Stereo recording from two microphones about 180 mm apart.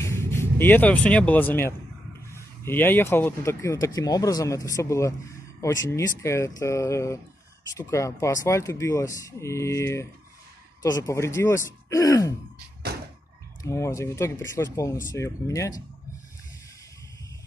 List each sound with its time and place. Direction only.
0.0 s speech: 15° left (ahead or behind)
13.6 s speech: 15° left (ahead or behind)